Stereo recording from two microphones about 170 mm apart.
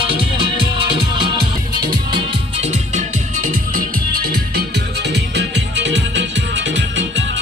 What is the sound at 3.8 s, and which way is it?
Music, 60° right (ahead or behind).